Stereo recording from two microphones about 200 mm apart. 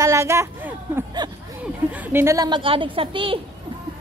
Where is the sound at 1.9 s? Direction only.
10° right (ahead or behind); by 3.4 s 25° right (ahead or behind).